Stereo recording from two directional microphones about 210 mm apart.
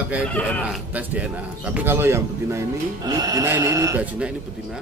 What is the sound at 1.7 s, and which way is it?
Speech, 10° right (ahead or behind).